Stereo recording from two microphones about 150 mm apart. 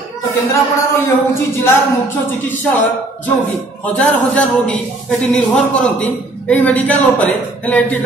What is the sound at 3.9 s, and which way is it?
A man's voice, 10° left (ahead or behind).